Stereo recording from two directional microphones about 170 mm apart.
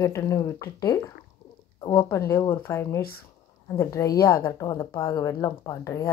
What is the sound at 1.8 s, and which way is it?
A woman's voice, 25° left (ahead or behind).